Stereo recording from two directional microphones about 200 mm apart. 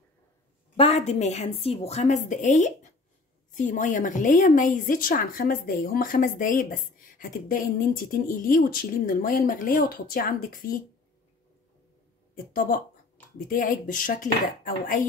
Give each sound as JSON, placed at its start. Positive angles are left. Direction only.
{"t": 0.7, "sound": "a woman's voice", "side_deg": 30}
{"t": 13.5, "sound": "a woman's voice", "side_deg": 45}